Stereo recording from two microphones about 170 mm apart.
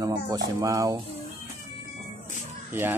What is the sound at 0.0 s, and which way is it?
Speech, 20° right (ahead or behind).